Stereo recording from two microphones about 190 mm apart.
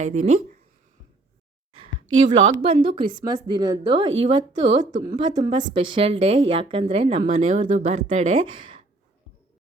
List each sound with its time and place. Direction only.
0.0 s speech: 35° right (ahead or behind)
2.5 s a woman's voice: 35° right (ahead or behind)